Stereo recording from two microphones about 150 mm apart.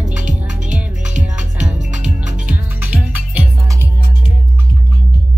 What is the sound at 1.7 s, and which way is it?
Music, 5° right (ahead or behind).